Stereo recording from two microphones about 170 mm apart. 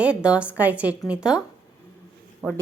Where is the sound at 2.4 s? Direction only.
10° right (ahead or behind).